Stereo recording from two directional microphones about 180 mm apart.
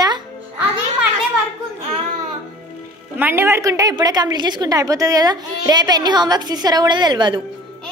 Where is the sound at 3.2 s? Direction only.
10° right (ahead or behind).